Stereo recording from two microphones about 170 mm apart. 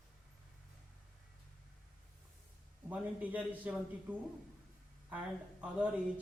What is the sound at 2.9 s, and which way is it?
Speech, 10° right (ahead or behind).